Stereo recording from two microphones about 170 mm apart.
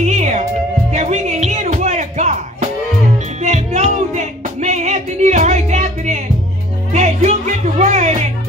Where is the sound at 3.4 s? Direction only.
40° right (ahead or behind).